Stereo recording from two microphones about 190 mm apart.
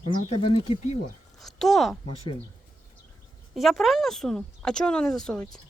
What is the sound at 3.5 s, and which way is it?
Speech, centre (ahead or behind).